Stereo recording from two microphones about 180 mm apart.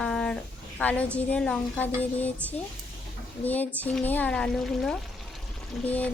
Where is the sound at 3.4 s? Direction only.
10° left (ahead or behind).